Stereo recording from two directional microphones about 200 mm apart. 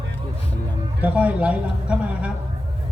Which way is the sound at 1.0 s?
5° right (ahead or behind).